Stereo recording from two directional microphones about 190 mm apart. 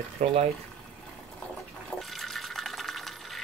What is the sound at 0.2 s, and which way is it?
Speech, 35° right (ahead or behind).